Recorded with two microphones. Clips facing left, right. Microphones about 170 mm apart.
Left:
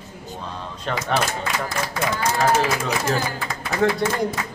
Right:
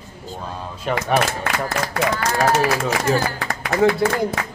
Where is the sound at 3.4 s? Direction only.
75° right (ahead or behind).